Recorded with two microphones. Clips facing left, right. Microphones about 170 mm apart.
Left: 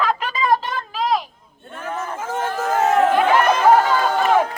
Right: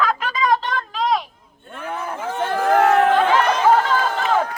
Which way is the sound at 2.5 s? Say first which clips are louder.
Right 4 dB; 75° right (ahead or behind).